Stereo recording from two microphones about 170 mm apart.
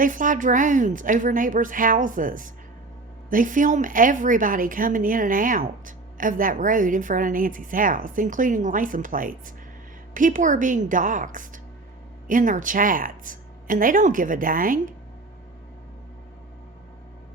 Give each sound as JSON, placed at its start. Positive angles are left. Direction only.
{"t": 0.0, "sound": "a woman's voice", "side_deg": -50}